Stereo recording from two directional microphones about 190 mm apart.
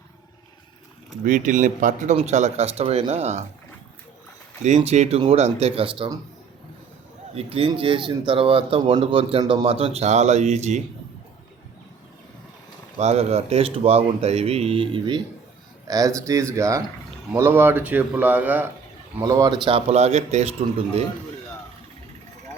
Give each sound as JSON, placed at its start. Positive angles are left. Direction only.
{"t": 1.2, "sound": "speech", "side_deg": -40}
{"t": 4.6, "sound": "speech", "side_deg": -35}
{"t": 7.3, "sound": "speech", "side_deg": -30}
{"t": 13.0, "sound": "speech", "side_deg": -35}